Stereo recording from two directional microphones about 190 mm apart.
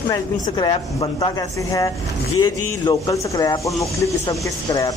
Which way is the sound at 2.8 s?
20° left (ahead or behind).